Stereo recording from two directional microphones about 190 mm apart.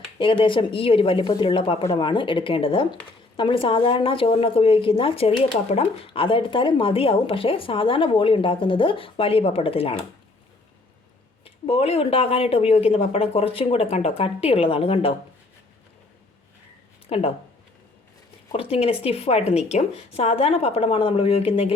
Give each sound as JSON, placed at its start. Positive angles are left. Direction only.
{"t": 0.2, "sound": "speech", "side_deg": 25}
{"t": 11.4, "sound": "speech", "side_deg": 30}
{"t": 17.1, "sound": "speech", "side_deg": 30}
{"t": 18.5, "sound": "speech", "side_deg": 30}